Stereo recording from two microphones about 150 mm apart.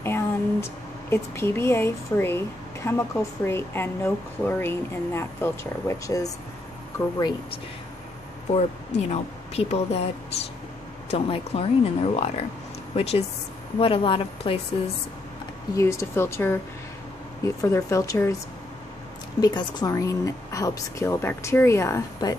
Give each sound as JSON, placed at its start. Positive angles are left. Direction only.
{"t": 0.0, "sound": "a sound", "side_deg": 15}
{"t": 1.1, "sound": "a woman's voice", "side_deg": 15}
{"t": 8.5, "sound": "speech", "side_deg": 45}
{"t": 11.1, "sound": "speech", "side_deg": 40}
{"t": 15.7, "sound": "a woman's voice", "side_deg": 20}
{"t": 17.6, "sound": "a woman's voice", "side_deg": 20}
{"t": 19.4, "sound": "a woman's voice", "side_deg": 25}